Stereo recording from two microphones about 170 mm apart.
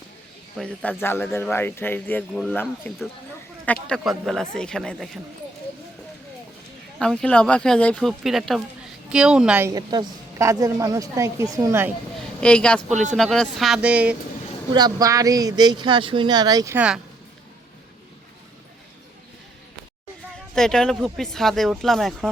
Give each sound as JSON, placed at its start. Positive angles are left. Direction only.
{"t": 0.5, "sound": "speech", "side_deg": 5}
{"t": 7.0, "sound": "speech", "side_deg": 5}
{"t": 9.6, "sound": "a woman's voice", "side_deg": -20}
{"t": 12.4, "sound": "speech", "side_deg": 5}
{"t": 12.9, "sound": "speech", "side_deg": -45}
{"t": 13.1, "sound": "speech", "side_deg": 5}
{"t": 14.7, "sound": "a woman's voice", "side_deg": -25}
{"t": 16.7, "sound": "speech", "side_deg": -5}
{"t": 20.6, "sound": "speech", "side_deg": 5}